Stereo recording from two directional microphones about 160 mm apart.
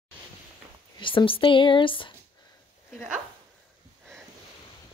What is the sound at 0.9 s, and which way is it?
Speech, 30° left (ahead or behind).